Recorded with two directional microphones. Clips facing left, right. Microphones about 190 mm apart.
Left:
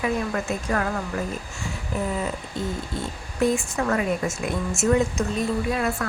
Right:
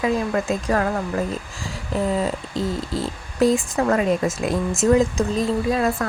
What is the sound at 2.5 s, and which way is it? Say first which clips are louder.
Speech: right 5 dB; 90° right.